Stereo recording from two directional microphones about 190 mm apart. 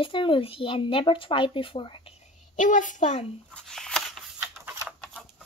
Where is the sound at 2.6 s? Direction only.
40° left (ahead or behind).